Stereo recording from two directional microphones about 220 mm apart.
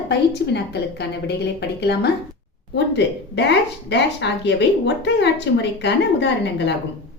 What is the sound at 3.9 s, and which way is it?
A woman's voice, 50° left (ahead or behind).